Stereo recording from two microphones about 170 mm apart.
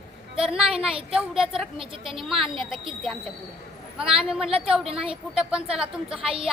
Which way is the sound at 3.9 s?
5° right (ahead or behind).